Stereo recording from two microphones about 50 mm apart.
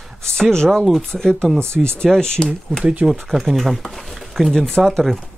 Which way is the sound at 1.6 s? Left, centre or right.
Right.